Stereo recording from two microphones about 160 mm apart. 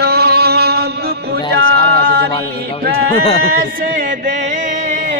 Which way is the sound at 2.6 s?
75° right (ahead or behind).